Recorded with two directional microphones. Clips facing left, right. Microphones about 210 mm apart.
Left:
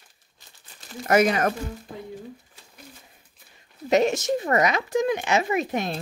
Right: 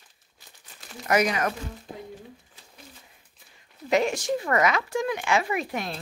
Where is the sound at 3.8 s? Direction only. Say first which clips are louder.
Left 3 dB; 20° left (ahead or behind).